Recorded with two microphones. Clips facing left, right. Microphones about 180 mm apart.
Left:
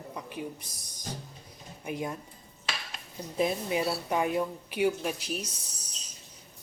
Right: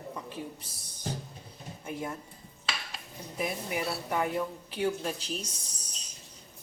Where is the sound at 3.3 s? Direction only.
25° left (ahead or behind).